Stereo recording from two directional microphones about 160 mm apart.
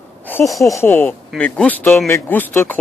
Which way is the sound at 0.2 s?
10° left (ahead or behind).